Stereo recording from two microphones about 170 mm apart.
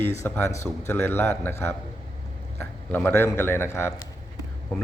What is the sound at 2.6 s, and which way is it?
A man's voice, 10° left (ahead or behind).